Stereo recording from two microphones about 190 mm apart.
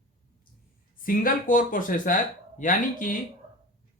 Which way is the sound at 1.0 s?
45° left (ahead or behind).